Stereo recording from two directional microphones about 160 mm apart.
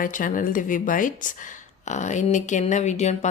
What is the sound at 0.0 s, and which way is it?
Speech, 60° left (ahead or behind).